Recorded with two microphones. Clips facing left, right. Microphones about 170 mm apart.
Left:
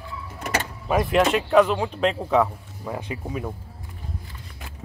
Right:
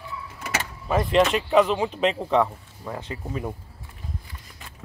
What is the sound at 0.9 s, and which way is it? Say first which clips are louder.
Speech: even; 5° left (ahead or behind).